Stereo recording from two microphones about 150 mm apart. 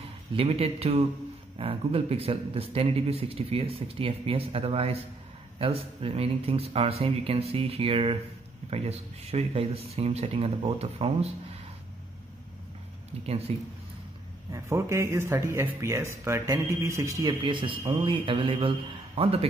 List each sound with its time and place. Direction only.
0.3 s a man's voice: 40° right (ahead or behind)
13.5 s speech: 40° right (ahead or behind)
14.5 s a man's voice: 20° right (ahead or behind); by 18.7 s 35° right (ahead or behind)